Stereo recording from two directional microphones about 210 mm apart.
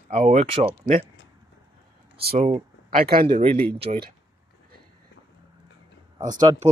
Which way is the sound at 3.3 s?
30° right (ahead or behind).